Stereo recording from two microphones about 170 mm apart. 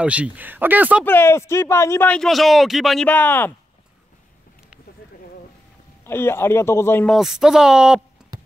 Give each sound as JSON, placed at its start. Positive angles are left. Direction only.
{"t": 0.0, "sound": "speech", "side_deg": -5}
{"t": 1.0, "sound": "speech", "side_deg": 15}
{"t": 3.1, "sound": "speech", "side_deg": 10}
{"t": 6.0, "sound": "speech", "side_deg": 15}
{"t": 7.1, "sound": "speech", "side_deg": 0}
{"t": 8.2, "sound": "a sound", "side_deg": -5}